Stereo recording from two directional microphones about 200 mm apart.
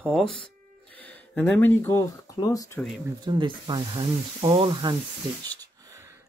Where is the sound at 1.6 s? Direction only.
10° left (ahead or behind).